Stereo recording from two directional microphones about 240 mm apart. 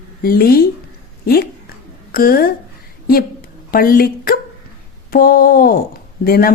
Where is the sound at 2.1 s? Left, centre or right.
Left.